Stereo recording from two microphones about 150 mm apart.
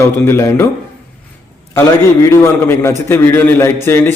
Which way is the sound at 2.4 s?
15° left (ahead or behind).